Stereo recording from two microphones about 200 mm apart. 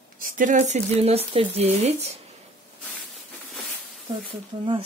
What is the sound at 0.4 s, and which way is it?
Speech, 40° right (ahead or behind).